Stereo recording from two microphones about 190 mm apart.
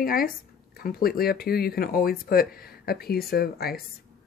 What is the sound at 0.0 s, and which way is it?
Speech, 50° left (ahead or behind).